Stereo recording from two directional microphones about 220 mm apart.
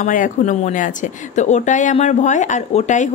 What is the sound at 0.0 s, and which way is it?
Speech, 35° left (ahead or behind).